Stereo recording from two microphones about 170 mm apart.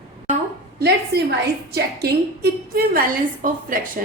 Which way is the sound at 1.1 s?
65° right (ahead or behind).